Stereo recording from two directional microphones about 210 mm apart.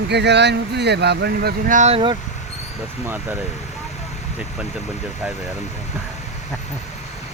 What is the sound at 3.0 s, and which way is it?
Speech, 10° right (ahead or behind).